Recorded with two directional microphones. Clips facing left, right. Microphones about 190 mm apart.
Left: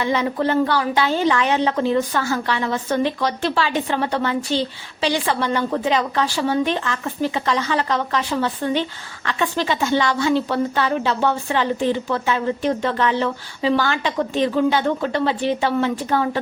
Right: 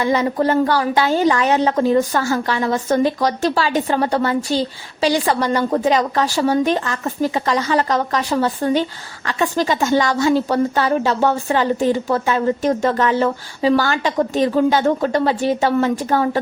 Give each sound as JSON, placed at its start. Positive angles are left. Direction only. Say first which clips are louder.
{"t": 0.0, "sound": "a woman's voice", "louder": "right 3 dB", "side_deg": -40}